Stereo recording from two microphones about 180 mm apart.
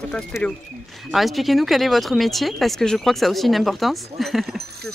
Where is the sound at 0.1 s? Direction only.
5° left (ahead or behind).